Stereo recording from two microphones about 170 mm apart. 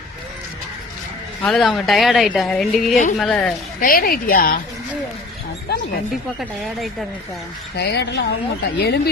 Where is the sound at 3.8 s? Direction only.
60° left (ahead or behind).